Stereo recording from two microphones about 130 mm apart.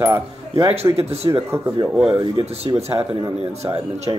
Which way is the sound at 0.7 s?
50° right (ahead or behind).